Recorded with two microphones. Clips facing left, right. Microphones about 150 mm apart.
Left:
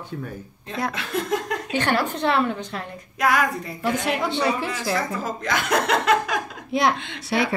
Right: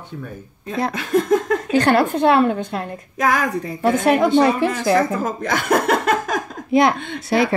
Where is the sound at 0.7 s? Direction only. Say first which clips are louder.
Right 7 dB; 40° right (ahead or behind).